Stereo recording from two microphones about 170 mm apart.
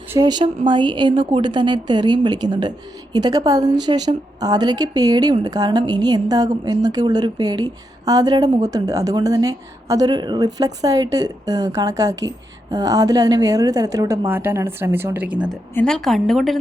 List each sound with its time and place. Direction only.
0.1 s a woman's voice: 25° right (ahead or behind)
15.7 s a woman's voice: 5° left (ahead or behind)